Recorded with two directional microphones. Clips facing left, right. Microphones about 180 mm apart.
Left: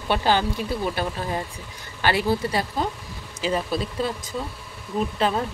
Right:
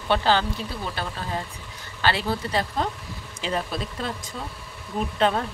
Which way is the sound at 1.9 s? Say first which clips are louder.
Left 3 dB; 15° left (ahead or behind).